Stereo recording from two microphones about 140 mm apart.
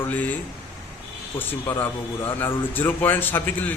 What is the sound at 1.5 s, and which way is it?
A man's voice, 15° left (ahead or behind).